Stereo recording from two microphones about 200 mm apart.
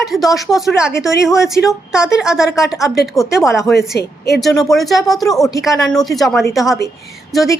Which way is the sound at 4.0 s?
55° left (ahead or behind).